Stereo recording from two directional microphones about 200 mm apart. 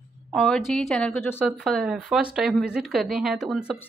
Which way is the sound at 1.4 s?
Centre (ahead or behind).